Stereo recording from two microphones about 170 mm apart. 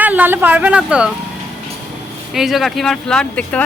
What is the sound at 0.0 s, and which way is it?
Speech, 10° right (ahead or behind).